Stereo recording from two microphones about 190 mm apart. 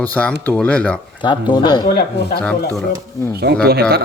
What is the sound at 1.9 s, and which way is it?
Speech, 55° left (ahead or behind).